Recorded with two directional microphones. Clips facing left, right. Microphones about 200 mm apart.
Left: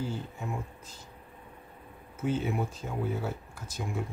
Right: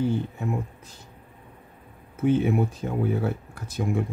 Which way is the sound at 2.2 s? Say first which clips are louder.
Right 8 dB; 60° right (ahead or behind).